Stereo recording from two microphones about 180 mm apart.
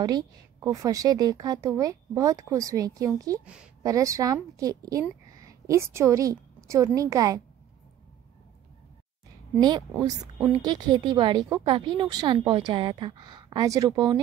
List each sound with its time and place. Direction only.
0.0 s a woman's voice: 20° right (ahead or behind)
9.6 s a woman's voice: 25° right (ahead or behind)